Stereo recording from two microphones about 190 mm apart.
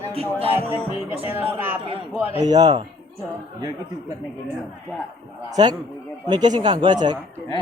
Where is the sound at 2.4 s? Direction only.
20° right (ahead or behind).